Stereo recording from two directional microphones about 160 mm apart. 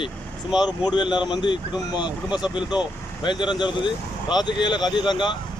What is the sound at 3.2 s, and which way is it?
Speech, 30° left (ahead or behind).